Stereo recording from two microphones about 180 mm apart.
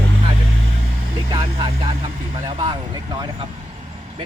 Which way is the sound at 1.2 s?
25° right (ahead or behind).